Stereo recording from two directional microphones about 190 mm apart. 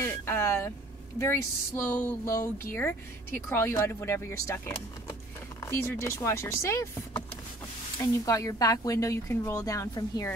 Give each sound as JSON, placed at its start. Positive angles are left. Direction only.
{"t": 0.0, "sound": "speech", "side_deg": 15}